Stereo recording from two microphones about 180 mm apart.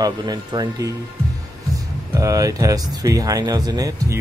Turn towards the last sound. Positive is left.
turn(degrees=-20)  # may be behind; listen again after turning